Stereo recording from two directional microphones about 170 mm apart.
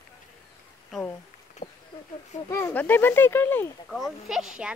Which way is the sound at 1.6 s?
50° left (ahead or behind).